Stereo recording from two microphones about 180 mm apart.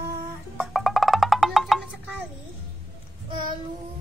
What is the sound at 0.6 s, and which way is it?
Music, centre (ahead or behind).